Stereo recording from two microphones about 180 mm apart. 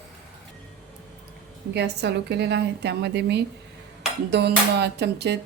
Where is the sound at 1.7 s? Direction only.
70° right (ahead or behind).